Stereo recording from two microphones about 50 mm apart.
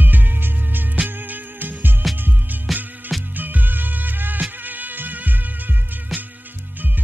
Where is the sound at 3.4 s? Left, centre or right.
Right.